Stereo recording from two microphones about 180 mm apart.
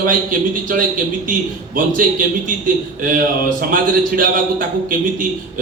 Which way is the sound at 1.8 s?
50° right (ahead or behind).